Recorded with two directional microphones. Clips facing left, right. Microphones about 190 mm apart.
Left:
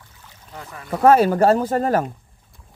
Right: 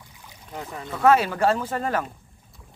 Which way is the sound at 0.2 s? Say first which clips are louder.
Right 3 dB; 15° right (ahead or behind).